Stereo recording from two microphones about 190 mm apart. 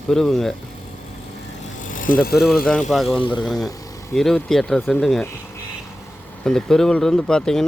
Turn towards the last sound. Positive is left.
turn(degrees=5)  # may be behind; listen again after turning